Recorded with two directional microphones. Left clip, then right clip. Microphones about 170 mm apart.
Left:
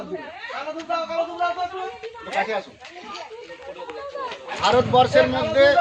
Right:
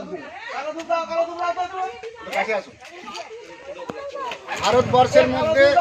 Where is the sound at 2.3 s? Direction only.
Centre (ahead or behind).